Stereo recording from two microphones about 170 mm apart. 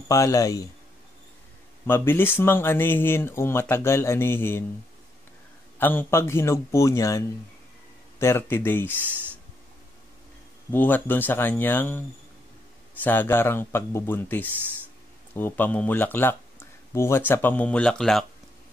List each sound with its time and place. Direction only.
0.1 s a man's voice: 20° left (ahead or behind)
1.9 s speech: 15° left (ahead or behind)
5.8 s speech: 10° left (ahead or behind)
10.7 s speech: 10° left (ahead or behind)
13.0 s speech: 10° left (ahead or behind)